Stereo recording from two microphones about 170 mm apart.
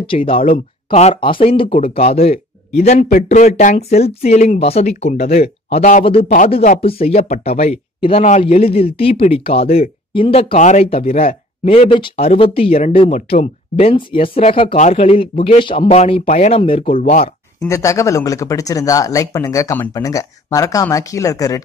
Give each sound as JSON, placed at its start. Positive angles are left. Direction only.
{"t": 0.0, "sound": "speech", "side_deg": 30}
{"t": 17.6, "sound": "speech", "side_deg": 20}